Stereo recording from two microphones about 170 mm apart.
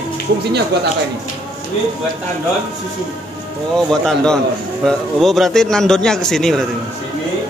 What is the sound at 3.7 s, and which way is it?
A man's voice, 5° left (ahead or behind).